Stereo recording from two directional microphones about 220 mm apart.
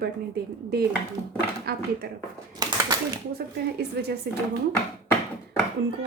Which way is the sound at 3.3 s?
45° right (ahead or behind).